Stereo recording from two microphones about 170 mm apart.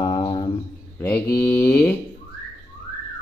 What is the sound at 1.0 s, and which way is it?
Speech, 10° left (ahead or behind).